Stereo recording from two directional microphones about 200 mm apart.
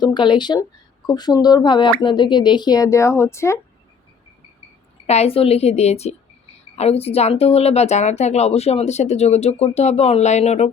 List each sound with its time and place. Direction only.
0.0 s speech: 20° left (ahead or behind)
5.0 s speech: 30° left (ahead or behind)